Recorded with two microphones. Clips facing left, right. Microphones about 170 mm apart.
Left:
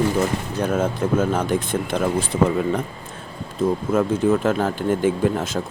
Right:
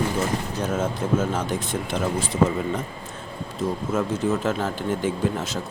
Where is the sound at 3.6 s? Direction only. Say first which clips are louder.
Left 5 dB; 55° left (ahead or behind).